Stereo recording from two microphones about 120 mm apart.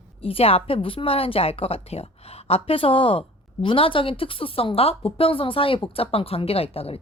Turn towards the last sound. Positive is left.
turn(degrees=55)  # may be behind; listen again after turning